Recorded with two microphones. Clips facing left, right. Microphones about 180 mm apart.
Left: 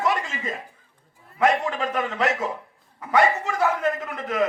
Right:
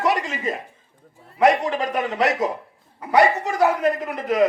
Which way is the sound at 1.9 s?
40° right (ahead or behind).